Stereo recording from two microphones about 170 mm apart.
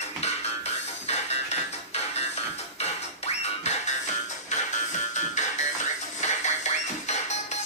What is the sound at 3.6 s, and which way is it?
Music, 40° left (ahead or behind).